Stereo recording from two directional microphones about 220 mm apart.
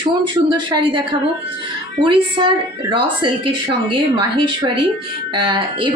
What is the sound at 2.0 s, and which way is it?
Speech, 20° right (ahead or behind).